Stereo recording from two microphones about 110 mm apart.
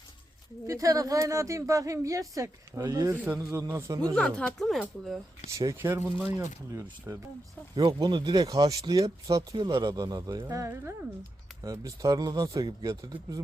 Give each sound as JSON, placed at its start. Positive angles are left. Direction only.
{"t": 0.7, "sound": "speech", "side_deg": -30}
{"t": 4.1, "sound": "speech", "side_deg": 10}
{"t": 5.5, "sound": "speech", "side_deg": -25}
{"t": 7.8, "sound": "speech", "side_deg": -40}